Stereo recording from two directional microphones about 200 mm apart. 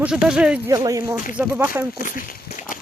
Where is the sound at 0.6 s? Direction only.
15° right (ahead or behind).